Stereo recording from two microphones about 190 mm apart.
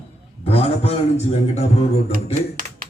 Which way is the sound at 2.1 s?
50° right (ahead or behind).